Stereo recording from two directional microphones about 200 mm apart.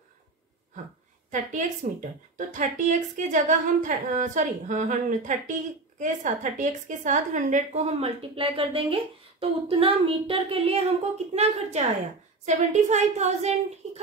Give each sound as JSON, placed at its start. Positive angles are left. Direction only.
{"t": 1.3, "sound": "a woman's voice", "side_deg": -40}